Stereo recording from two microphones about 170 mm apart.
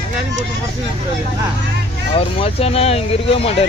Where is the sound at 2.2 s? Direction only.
35° left (ahead or behind).